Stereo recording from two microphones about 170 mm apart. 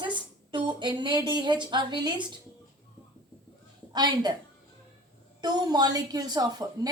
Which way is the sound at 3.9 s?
25° right (ahead or behind).